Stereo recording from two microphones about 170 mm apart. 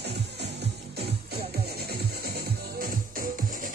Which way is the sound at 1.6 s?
70° right (ahead or behind).